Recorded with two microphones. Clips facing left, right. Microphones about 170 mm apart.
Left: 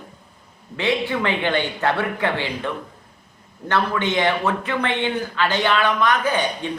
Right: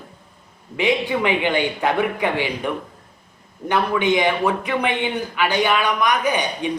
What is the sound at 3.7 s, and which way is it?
A man's voice, 15° right (ahead or behind).